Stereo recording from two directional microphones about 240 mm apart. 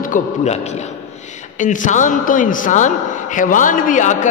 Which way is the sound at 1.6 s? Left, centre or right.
Left.